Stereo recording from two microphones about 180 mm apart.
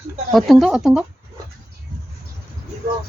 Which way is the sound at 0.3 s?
Centre (ahead or behind).